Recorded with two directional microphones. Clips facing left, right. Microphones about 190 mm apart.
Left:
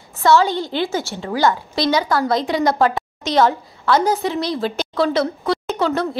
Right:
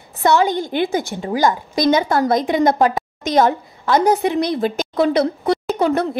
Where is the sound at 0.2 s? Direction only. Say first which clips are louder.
Even; 20° right (ahead or behind).